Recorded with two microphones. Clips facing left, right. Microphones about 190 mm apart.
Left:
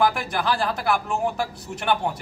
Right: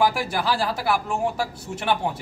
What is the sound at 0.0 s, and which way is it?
A man's voice, 5° right (ahead or behind).